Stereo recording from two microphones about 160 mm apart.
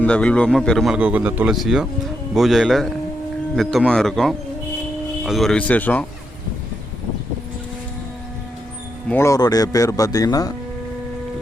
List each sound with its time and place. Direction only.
0.0 s a man's voice: 5° left (ahead or behind)
9.0 s speech: 15° left (ahead or behind)